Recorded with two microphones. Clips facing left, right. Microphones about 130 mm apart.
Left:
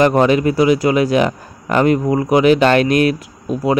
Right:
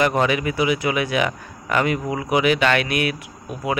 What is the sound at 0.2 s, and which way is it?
A man's voice, 35° left (ahead or behind).